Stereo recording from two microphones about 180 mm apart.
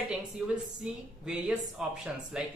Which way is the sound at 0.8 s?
5° right (ahead or behind).